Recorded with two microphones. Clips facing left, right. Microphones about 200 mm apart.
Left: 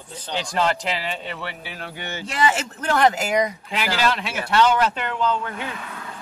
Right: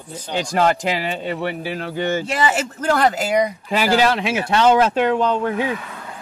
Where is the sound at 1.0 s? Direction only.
45° right (ahead or behind).